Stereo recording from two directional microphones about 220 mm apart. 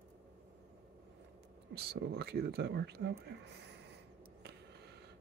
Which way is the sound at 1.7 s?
45° right (ahead or behind).